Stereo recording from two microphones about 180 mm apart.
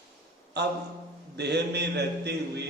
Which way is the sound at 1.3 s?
70° right (ahead or behind).